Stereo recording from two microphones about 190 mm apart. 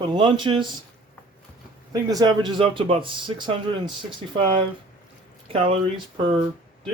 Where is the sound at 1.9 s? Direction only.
20° right (ahead or behind).